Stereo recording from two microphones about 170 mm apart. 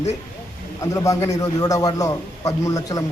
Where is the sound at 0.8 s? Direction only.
20° left (ahead or behind).